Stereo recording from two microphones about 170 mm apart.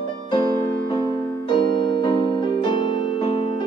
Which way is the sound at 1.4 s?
25° left (ahead or behind).